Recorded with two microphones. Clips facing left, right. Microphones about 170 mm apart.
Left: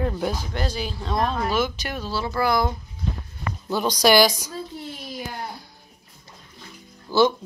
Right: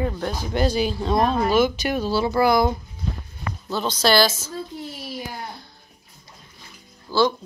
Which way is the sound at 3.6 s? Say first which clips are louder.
Left 2 dB; 15° left (ahead or behind).